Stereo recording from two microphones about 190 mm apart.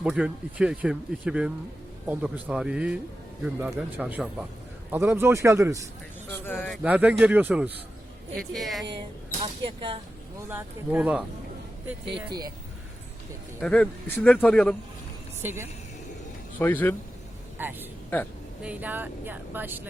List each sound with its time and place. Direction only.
0.0 s speech: 5° right (ahead or behind)
6.2 s speech: 10° left (ahead or behind)
6.8 s speech: 10° right (ahead or behind)
9.4 s speech: 30° right (ahead or behind)
10.5 s speech: 10° right (ahead or behind)
13.6 s speech: 5° left (ahead or behind)
15.4 s speech: 10° right (ahead or behind)
16.6 s speech: 10° left (ahead or behind)
17.6 s speech: 10° right (ahead or behind)
18.1 s speech: 10° left (ahead or behind)
18.6 s speech: 5° right (ahead or behind)